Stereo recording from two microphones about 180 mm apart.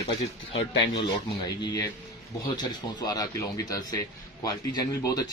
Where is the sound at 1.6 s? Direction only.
20° left (ahead or behind).